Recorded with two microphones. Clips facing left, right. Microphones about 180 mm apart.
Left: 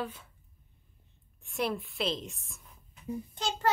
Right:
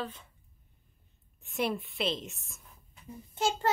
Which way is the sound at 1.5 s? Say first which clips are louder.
Even; centre (ahead or behind).